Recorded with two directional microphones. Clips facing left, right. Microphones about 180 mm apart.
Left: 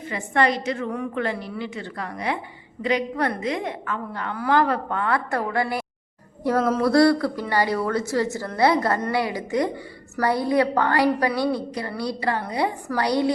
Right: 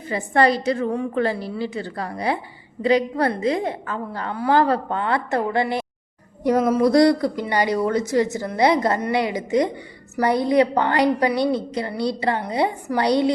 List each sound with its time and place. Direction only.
0.1 s a woman's voice: 35° right (ahead or behind)